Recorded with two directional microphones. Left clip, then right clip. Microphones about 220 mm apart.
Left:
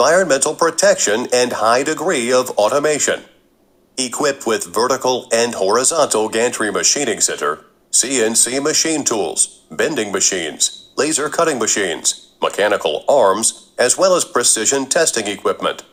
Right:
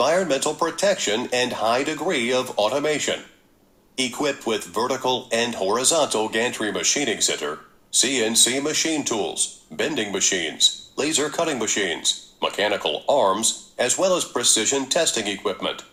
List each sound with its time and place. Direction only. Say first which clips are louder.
0.0 s speech: left 7 dB; 20° left (ahead or behind)